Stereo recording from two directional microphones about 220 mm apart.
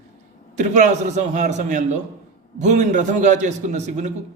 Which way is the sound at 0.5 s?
35° right (ahead or behind).